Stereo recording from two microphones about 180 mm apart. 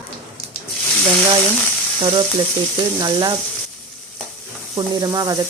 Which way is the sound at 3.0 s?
25° right (ahead or behind).